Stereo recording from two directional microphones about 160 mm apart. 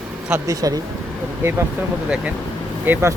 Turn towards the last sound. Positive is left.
turn(degrees=-15)  # may be behind; listen again after turning